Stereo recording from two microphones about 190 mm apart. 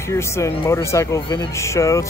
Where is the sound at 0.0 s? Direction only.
15° left (ahead or behind).